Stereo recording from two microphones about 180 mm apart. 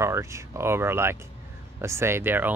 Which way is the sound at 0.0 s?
15° right (ahead or behind).